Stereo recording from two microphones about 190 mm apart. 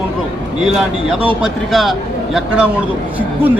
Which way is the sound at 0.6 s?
Centre (ahead or behind).